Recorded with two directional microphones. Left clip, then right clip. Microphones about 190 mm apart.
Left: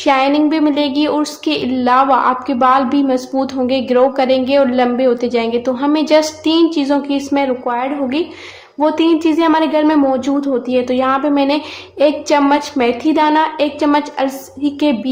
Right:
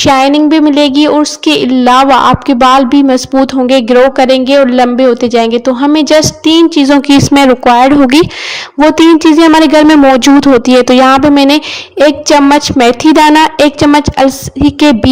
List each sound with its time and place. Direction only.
0.0 s a woman's voice: 45° right (ahead or behind)